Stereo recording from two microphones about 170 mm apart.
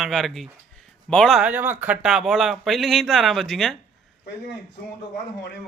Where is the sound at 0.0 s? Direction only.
Centre (ahead or behind).